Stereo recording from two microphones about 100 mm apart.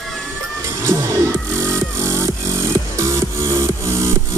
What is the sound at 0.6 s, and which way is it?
Music, 30° right (ahead or behind).